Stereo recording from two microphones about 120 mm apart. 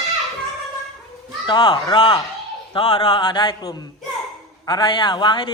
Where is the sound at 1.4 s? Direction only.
40° left (ahead or behind).